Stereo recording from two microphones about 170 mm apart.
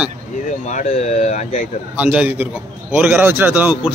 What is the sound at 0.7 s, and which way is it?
Speech, 45° left (ahead or behind).